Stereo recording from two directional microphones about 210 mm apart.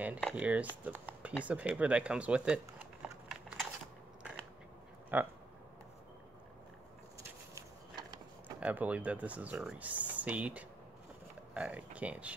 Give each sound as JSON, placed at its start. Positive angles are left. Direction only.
{"t": 0.0, "sound": "speech", "side_deg": -5}
{"t": 5.1, "sound": "speech", "side_deg": -10}
{"t": 7.5, "sound": "a sound", "side_deg": -20}
{"t": 8.5, "sound": "speech", "side_deg": -5}